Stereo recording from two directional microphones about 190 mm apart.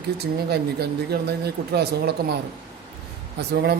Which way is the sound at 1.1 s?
55° right (ahead or behind).